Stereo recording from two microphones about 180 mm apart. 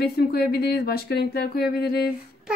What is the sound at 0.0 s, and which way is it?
Speech, 60° left (ahead or behind).